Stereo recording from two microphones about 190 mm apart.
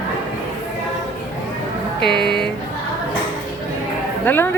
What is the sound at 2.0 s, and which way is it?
Speech, 60° left (ahead or behind).